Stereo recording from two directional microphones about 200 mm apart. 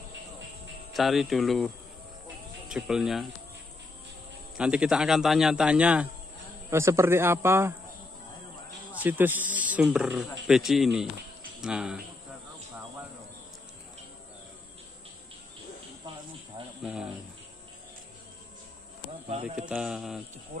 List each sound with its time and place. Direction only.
0.9 s a man's voice: centre (ahead or behind)
2.7 s a man's voice: 5° right (ahead or behind)
4.6 s a man's voice: 5° right (ahead or behind)
8.9 s a man's voice: 10° right (ahead or behind)
16.8 s a man's voice: 5° right (ahead or behind)
19.7 s a man's voice: 5° right (ahead or behind)